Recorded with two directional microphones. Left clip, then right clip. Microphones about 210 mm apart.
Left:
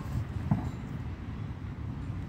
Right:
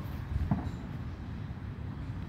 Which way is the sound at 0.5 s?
20° left (ahead or behind).